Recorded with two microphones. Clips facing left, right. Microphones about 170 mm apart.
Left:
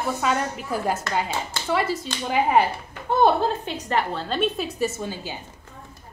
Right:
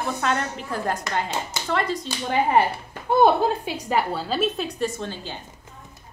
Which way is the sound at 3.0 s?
10° right (ahead or behind).